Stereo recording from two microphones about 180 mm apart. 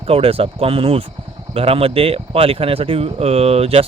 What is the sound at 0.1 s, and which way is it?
Speech, 30° right (ahead or behind).